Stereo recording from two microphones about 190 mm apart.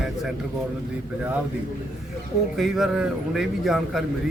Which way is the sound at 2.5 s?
Centre (ahead or behind).